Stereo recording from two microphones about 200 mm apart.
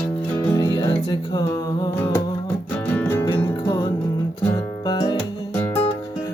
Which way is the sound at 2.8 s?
10° left (ahead or behind).